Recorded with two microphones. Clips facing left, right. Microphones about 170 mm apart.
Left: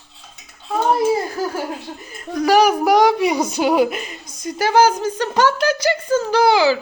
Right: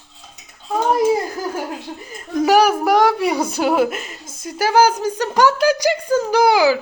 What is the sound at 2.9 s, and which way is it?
A woman's voice, centre (ahead or behind).